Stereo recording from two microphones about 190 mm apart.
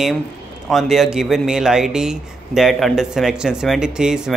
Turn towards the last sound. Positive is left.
turn(degrees=-5)  # may be behind; listen again after turning